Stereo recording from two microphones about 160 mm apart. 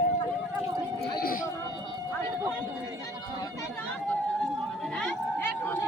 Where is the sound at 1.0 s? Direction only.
70° left (ahead or behind).